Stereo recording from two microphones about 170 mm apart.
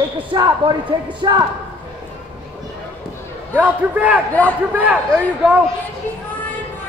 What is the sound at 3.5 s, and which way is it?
A man's voice, 10° right (ahead or behind).